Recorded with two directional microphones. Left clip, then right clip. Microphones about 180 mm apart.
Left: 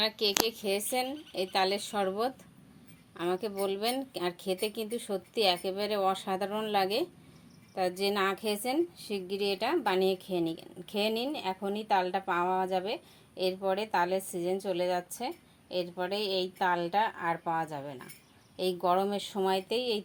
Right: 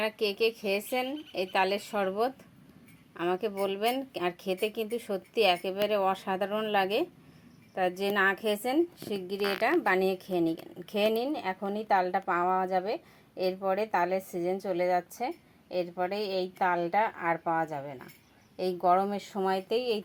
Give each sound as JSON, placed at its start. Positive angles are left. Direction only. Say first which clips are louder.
{"t": 0.0, "sound": "a woman's voice", "louder": "even", "side_deg": 0}
{"t": 8.4, "sound": "speech", "louder": "right 3 dB", "side_deg": -40}
{"t": 9.5, "sound": "a woman's voice", "louder": "right 4 dB", "side_deg": -15}